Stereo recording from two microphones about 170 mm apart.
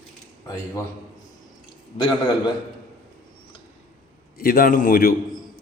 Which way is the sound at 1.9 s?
25° left (ahead or behind).